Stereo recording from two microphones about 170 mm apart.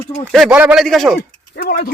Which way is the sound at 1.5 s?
60° left (ahead or behind).